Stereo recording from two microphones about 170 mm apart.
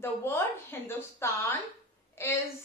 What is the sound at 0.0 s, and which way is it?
A woman's voice, 15° left (ahead or behind).